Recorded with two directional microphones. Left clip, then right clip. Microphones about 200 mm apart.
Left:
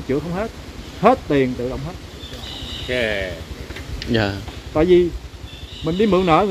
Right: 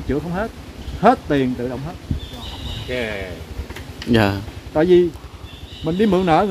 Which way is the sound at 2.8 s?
60° left (ahead or behind).